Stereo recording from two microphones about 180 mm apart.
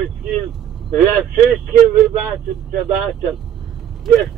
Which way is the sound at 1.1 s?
Centre (ahead or behind).